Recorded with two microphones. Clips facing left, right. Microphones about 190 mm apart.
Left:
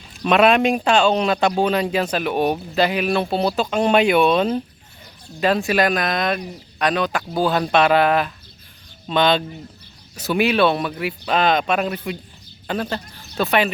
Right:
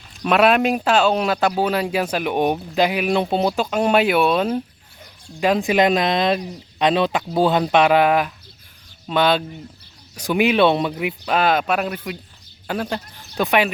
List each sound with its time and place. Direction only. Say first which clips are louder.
0.2 s a man's voice: left 1 dB; 5° right (ahead or behind); by 10.9 s 20° right (ahead or behind)
10.9 s a man's voice: even; 10° right (ahead or behind)